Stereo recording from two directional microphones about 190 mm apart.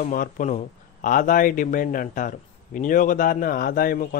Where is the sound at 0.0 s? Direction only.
45° left (ahead or behind).